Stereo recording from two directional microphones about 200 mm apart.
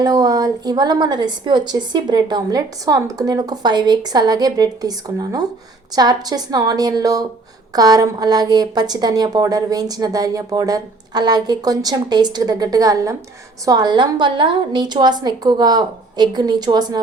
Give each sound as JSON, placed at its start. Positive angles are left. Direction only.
{"t": 0.0, "sound": "a woman's voice", "side_deg": -20}